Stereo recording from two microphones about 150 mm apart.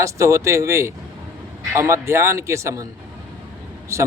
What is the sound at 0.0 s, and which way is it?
Speech, 20° right (ahead or behind).